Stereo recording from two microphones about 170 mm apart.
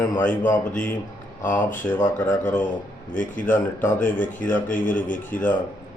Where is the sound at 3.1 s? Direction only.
50° left (ahead or behind).